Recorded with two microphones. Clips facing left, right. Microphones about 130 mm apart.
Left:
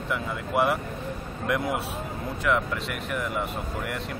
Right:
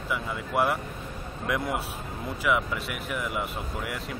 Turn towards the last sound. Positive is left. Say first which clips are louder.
# left 2 dB
turn(degrees=-5)  # may be behind; listen again after turning